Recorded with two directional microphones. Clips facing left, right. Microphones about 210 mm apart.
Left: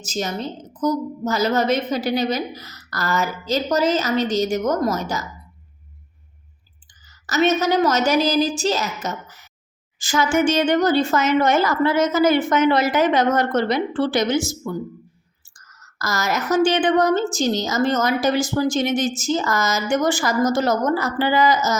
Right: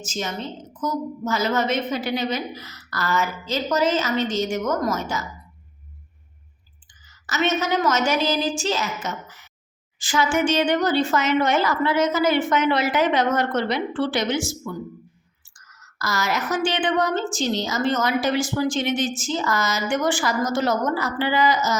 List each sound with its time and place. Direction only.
0.0 s a woman's voice: 35° left (ahead or behind)
7.1 s a woman's voice: 40° left (ahead or behind)